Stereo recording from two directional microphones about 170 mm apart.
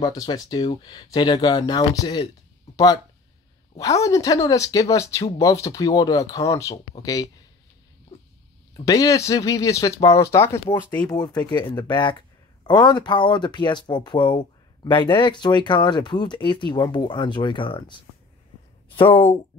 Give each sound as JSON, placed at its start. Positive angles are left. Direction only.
{"t": 0.0, "sound": "speech", "side_deg": 20}
{"t": 8.1, "sound": "a sound", "side_deg": 35}
{"t": 8.7, "sound": "speech", "side_deg": 20}